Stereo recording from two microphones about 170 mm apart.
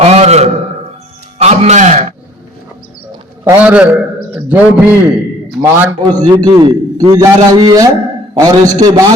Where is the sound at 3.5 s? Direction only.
10° right (ahead or behind).